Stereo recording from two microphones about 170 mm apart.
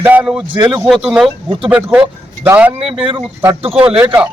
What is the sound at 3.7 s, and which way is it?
Speech, 10° right (ahead or behind).